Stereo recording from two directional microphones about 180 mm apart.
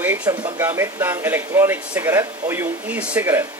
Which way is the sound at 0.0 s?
10° right (ahead or behind).